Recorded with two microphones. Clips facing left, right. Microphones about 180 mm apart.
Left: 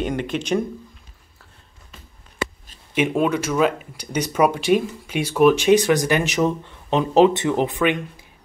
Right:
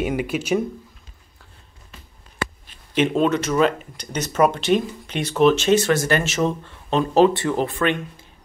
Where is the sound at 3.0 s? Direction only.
10° left (ahead or behind).